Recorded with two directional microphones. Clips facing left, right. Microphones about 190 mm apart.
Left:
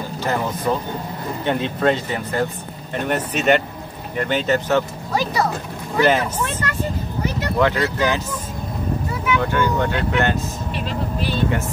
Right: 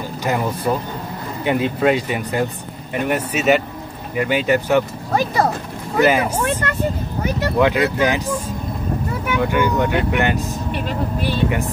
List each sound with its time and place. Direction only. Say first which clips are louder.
0.2 s speech: right 2 dB; 15° right (ahead or behind)
5.1 s speech: right 3 dB; 55° right (ahead or behind)
6.0 s speech: right 1 dB; 10° right (ahead or behind)
7.5 s speech: right 2 dB; 15° right (ahead or behind)
9.4 s speech: right 5 dB; 15° right (ahead or behind)